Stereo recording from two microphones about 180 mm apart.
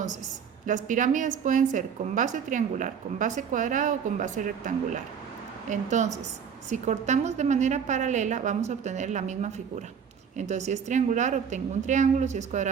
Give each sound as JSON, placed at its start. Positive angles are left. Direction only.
{"t": 0.6, "sound": "a woman's voice", "side_deg": -45}